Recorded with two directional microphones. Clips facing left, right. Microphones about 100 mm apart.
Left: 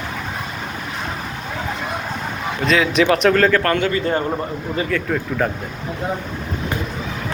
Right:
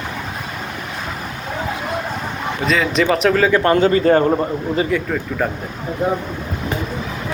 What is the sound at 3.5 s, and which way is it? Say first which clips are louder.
Speech: right 4 dB; 25° right (ahead or behind).